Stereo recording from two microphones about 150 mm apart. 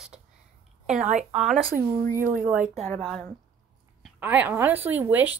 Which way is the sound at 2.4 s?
10° right (ahead or behind).